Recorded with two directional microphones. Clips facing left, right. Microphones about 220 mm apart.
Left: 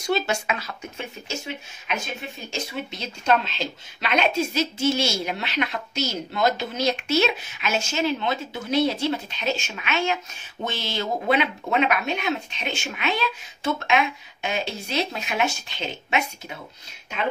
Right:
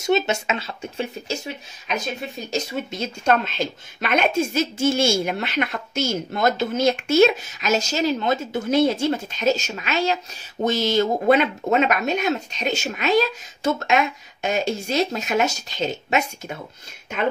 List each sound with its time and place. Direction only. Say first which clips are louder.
0.0 s speech: right 4 dB; 25° right (ahead or behind)
2.5 s a woman's voice: right 5 dB; 45° right (ahead or behind)